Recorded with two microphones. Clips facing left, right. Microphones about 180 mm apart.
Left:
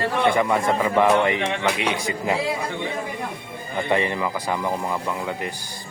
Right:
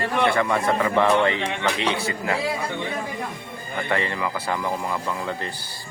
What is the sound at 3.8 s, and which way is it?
Speech, 20° left (ahead or behind).